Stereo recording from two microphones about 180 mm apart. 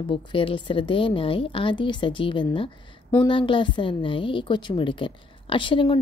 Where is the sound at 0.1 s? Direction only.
30° left (ahead or behind).